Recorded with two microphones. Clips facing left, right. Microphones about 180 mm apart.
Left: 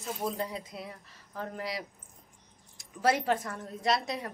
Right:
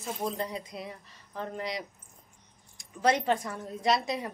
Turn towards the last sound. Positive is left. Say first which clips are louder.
# right 2 dB
turn(degrees=0)  # may be behind; listen again after turning